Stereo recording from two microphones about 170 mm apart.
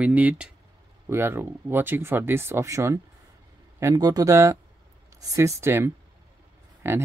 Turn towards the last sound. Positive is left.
turn(degrees=-15)  # may be behind; listen again after turning